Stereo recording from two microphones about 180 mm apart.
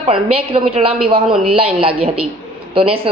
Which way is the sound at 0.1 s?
30° right (ahead or behind).